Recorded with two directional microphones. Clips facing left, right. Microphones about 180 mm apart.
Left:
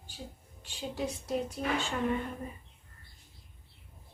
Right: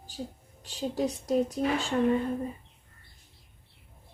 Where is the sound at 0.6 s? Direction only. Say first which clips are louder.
Right 6 dB; 40° right (ahead or behind).